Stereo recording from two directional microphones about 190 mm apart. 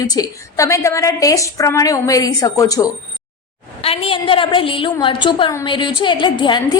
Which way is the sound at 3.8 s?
30° left (ahead or behind).